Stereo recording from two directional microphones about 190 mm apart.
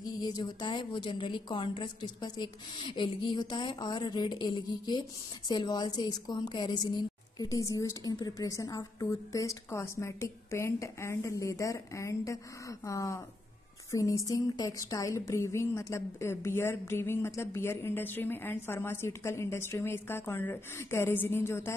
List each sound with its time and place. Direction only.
0.0 s a woman's voice: 20° left (ahead or behind)